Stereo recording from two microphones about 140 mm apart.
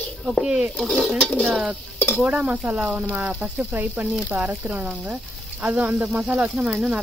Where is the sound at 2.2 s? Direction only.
10° right (ahead or behind).